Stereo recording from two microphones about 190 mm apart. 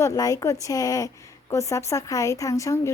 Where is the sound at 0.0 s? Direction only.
15° left (ahead or behind).